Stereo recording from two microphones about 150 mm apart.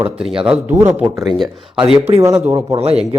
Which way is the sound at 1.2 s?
Centre (ahead or behind).